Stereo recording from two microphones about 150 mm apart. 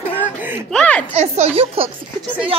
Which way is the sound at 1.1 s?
45° right (ahead or behind).